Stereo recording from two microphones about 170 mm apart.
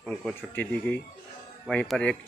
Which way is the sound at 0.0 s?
5° left (ahead or behind).